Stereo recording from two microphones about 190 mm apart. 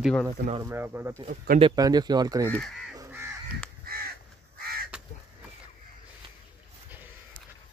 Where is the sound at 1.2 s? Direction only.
45° right (ahead or behind).